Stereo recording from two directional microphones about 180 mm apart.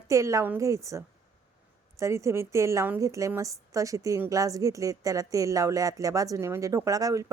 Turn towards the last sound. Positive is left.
turn(degrees=-20)  # may be behind; listen again after turning